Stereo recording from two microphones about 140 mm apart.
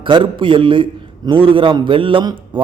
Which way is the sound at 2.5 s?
35° right (ahead or behind).